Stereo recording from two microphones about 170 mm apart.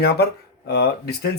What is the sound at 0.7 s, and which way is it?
Speech, 70° left (ahead or behind).